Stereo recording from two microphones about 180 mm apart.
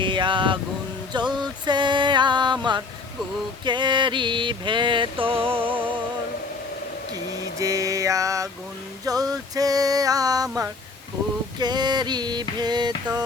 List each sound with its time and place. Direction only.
0.0 s a sound: 25° right (ahead or behind)
1.1 s music: 25° right (ahead or behind)
7.6 s mantra: 20° right (ahead or behind)
9.0 s music: 20° right (ahead or behind)